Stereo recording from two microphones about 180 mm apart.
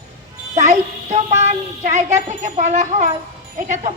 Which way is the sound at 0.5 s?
40° right (ahead or behind).